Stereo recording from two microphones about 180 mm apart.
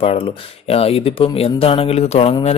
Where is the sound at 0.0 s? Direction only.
30° left (ahead or behind).